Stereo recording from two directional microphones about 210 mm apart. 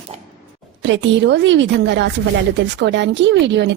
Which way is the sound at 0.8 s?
60° right (ahead or behind).